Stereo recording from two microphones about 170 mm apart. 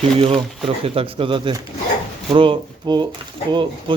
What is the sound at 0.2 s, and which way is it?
Speech, 30° right (ahead or behind).